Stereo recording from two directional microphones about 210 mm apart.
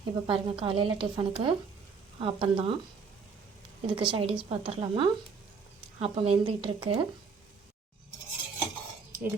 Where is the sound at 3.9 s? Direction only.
25° right (ahead or behind).